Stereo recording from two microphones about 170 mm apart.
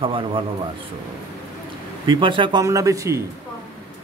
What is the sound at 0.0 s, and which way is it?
Speech, 30° right (ahead or behind).